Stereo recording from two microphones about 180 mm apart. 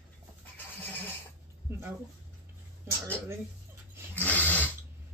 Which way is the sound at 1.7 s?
15° right (ahead or behind).